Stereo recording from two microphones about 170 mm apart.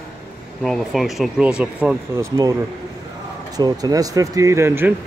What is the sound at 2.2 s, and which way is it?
Speech, 20° right (ahead or behind).